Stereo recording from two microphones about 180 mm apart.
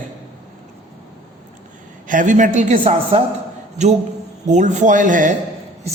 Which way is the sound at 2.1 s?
45° right (ahead or behind).